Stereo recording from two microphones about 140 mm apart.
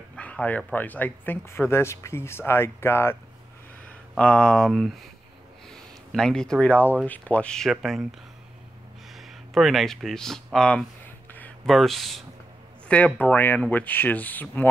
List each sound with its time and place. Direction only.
0.1 s speech: 10° left (ahead or behind)
4.1 s speech: 5° left (ahead or behind)
9.1 s a sound: centre (ahead or behind)
11.6 s speech: centre (ahead or behind)